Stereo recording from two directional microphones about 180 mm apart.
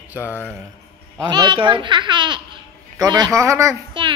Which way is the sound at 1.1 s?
25° right (ahead or behind).